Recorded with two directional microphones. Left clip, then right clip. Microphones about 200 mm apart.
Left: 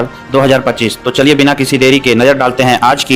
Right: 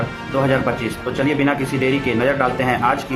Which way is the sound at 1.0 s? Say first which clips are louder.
Left 10 dB; 55° left (ahead or behind).